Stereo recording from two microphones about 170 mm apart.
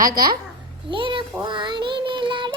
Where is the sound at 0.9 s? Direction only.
30° right (ahead or behind).